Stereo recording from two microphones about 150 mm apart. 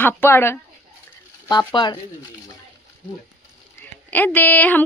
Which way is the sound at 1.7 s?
30° left (ahead or behind).